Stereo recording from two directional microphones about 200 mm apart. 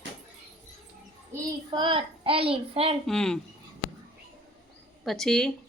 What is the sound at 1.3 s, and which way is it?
A child's voice, 25° right (ahead or behind).